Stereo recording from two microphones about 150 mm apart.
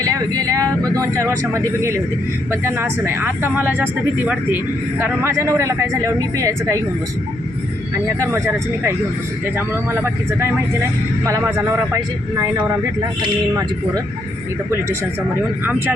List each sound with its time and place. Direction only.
0.0 s a man's voice: 20° right (ahead or behind)
8.2 s a man's voice: 20° right (ahead or behind)